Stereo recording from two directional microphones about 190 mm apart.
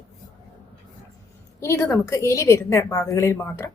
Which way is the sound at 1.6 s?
15° left (ahead or behind).